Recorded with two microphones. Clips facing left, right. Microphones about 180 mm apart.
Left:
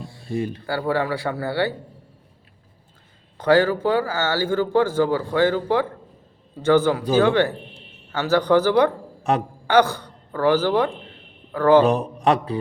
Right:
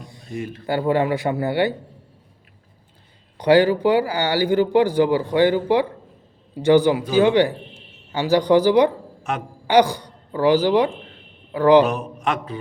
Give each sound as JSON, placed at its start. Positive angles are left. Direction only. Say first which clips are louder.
{"t": 0.0, "sound": "a sound", "louder": "left 3 dB", "side_deg": -20}
{"t": 0.3, "sound": "a man's voice", "louder": "left 4 dB", "side_deg": 30}
{"t": 0.7, "sound": "speech", "louder": "right 5 dB", "side_deg": -20}
{"t": 3.3, "sound": "speech", "louder": "right 2 dB", "side_deg": -15}
{"t": 9.3, "sound": "a man's voice", "louder": "left 5 dB", "side_deg": 35}
{"t": 9.6, "sound": "a woman's voice", "louder": "right 2 dB", "side_deg": -15}
{"t": 11.8, "sound": "a man's voice", "louder": "left 1 dB", "side_deg": 35}